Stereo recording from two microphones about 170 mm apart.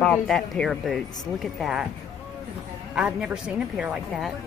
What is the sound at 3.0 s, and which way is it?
Speech, 5° right (ahead or behind).